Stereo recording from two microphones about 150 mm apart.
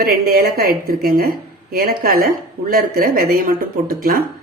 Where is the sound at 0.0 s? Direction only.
85° right.